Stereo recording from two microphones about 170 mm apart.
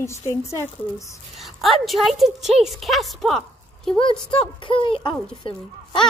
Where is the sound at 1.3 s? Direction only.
Centre (ahead or behind).